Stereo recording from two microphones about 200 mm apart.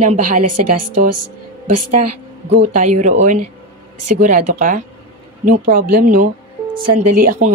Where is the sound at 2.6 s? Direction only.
35° right (ahead or behind).